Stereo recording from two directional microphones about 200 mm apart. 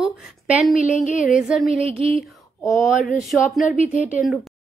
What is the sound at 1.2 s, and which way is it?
Speech, 5° right (ahead or behind).